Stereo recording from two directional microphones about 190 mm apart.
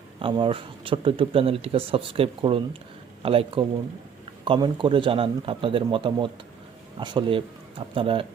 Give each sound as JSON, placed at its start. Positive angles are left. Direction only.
{"t": 0.2, "sound": "speech", "side_deg": -25}